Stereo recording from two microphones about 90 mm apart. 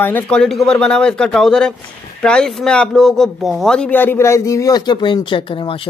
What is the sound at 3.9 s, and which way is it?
Speech, 20° left (ahead or behind).